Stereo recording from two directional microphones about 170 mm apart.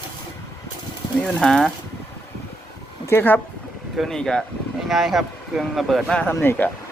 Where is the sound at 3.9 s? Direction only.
Centre (ahead or behind).